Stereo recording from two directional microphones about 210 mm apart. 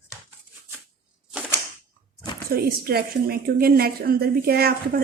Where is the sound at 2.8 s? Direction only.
45° right (ahead or behind).